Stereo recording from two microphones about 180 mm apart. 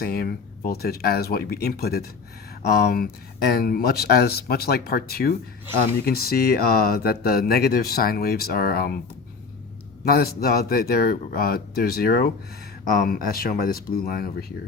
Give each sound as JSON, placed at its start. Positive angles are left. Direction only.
{"t": 0.0, "sound": "speech", "side_deg": 60}
{"t": 10.0, "sound": "speech", "side_deg": 60}